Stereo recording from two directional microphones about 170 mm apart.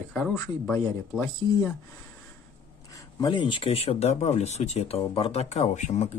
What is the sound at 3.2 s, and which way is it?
Speech, 30° left (ahead or behind).